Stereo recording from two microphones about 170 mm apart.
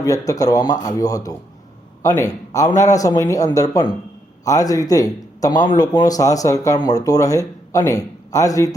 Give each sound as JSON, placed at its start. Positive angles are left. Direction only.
{"t": 0.0, "sound": "a man's voice", "side_deg": 20}